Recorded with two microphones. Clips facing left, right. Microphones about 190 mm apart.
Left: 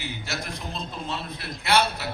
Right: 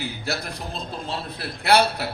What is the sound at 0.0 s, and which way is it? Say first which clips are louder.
A man's voice: right 4 dB; 35° right (ahead or behind).